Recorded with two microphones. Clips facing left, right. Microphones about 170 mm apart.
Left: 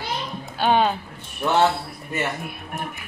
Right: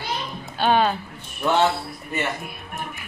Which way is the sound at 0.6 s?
15° left (ahead or behind).